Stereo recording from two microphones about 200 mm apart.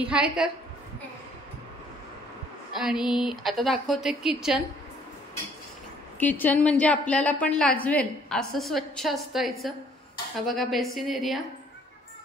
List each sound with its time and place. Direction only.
0.0 s a woman's voice: 5° right (ahead or behind)
2.7 s a woman's voice: centre (ahead or behind)
6.1 s a woman's voice: 10° left (ahead or behind)